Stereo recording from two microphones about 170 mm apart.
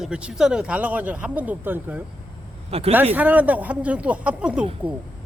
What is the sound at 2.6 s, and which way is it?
Speech, 35° right (ahead or behind).